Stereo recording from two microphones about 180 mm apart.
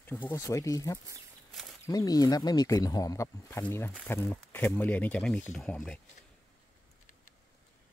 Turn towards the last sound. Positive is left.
turn(degrees=5)  # may be behind; listen again after turning